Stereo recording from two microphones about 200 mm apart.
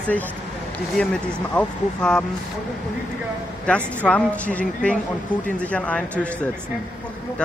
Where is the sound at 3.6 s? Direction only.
5° left (ahead or behind).